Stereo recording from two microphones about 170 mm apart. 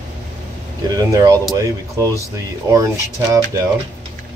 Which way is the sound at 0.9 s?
20° right (ahead or behind).